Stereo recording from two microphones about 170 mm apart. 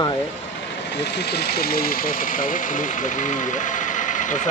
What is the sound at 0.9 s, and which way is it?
Speech, 80° left.